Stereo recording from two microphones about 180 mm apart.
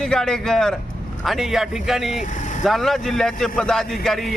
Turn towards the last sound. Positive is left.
turn(degrees=0)  # may be behind; listen again after turning